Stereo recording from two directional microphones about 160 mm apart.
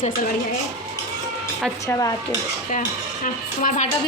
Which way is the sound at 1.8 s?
20° left (ahead or behind).